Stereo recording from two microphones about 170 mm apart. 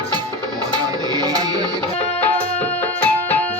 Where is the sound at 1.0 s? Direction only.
20° right (ahead or behind).